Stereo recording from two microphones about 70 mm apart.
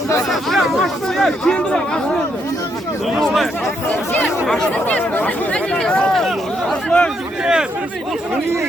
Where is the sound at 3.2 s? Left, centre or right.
Centre.